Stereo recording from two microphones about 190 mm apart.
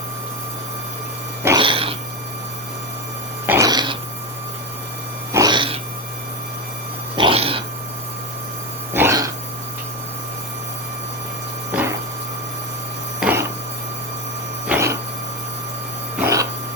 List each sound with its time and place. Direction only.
1.5 s cat: 25° right (ahead or behind)
3.4 s dog: 10° right (ahead or behind)
3.7 s dog: 20° right (ahead or behind)
5.3 s cat: 20° right (ahead or behind)
7.2 s dog: 30° right (ahead or behind)
8.9 s dog: 15° right (ahead or behind)
11.7 s a sound: 10° right (ahead or behind)
13.1 s printer: 10° right (ahead or behind)
14.7 s a sound: 15° right (ahead or behind)
16.1 s a sound: 15° right (ahead or behind)